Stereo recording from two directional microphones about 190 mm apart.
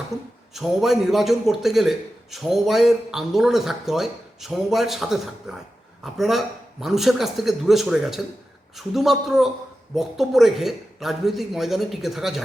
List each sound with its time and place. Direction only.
0.1 s speech: 20° right (ahead or behind)
0.5 s a man's voice: centre (ahead or behind)